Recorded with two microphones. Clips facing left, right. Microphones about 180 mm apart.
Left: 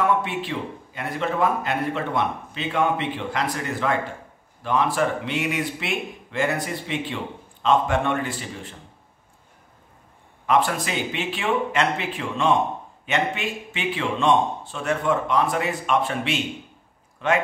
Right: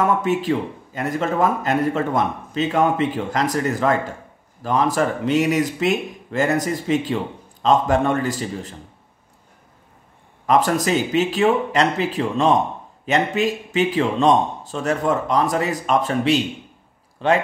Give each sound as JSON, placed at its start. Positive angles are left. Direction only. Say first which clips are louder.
{"t": 0.0, "sound": "a man's voice", "louder": "right 4 dB", "side_deg": -45}
{"t": 10.4, "sound": "a man's voice", "louder": "right 4 dB", "side_deg": -40}